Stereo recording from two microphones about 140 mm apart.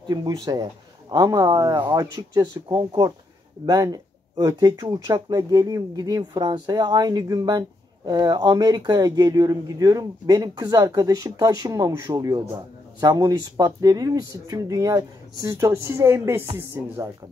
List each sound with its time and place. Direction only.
0.0 s speech: 30° right (ahead or behind)